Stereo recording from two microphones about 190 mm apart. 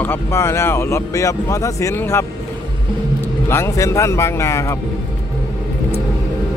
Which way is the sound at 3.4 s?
15° left (ahead or behind).